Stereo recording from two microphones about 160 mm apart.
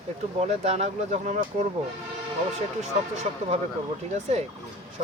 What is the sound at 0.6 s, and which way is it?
Speech, 40° right (ahead or behind).